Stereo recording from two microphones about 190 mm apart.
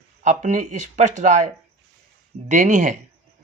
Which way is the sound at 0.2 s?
40° right (ahead or behind).